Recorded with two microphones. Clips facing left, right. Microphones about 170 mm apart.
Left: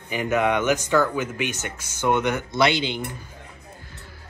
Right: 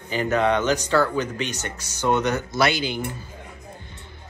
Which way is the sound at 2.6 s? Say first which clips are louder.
Left 2 dB; 25° left (ahead or behind).